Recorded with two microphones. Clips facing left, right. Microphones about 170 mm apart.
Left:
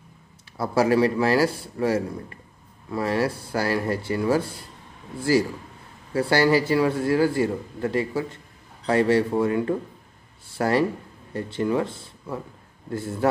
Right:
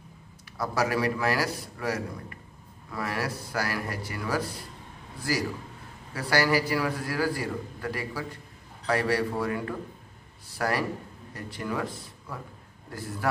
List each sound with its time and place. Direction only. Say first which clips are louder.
0.6 s a man's voice: left 7 dB; 30° left (ahead or behind)